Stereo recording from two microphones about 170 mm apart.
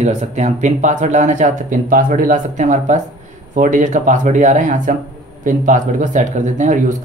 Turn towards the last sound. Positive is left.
turn(degrees=-45)  # may be behind; listen again after turning